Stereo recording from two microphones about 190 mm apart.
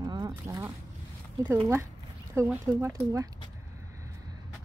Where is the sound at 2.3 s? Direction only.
15° right (ahead or behind).